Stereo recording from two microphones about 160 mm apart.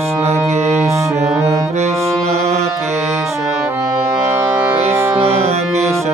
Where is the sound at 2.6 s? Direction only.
20° right (ahead or behind).